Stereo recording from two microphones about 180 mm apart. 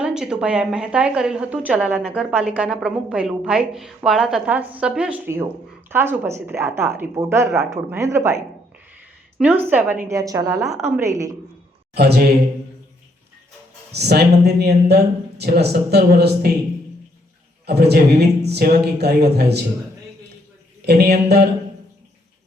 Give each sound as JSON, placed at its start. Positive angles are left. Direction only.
{"t": 0.0, "sound": "a woman's voice", "side_deg": -5}
{"t": 9.4, "sound": "a woman's voice", "side_deg": -10}
{"t": 11.9, "sound": "speech", "side_deg": -65}
{"t": 13.9, "sound": "speech", "side_deg": -65}
{"t": 17.7, "sound": "speech", "side_deg": -65}
{"t": 20.8, "sound": "speech", "side_deg": -65}